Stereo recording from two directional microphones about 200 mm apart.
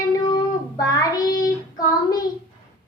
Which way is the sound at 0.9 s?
15° left (ahead or behind).